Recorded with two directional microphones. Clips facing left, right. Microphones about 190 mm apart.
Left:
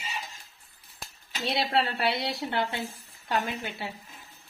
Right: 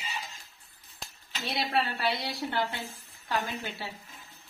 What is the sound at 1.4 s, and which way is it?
A woman's voice, 25° left (ahead or behind).